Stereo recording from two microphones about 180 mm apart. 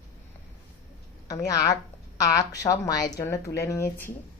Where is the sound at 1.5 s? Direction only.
20° left (ahead or behind).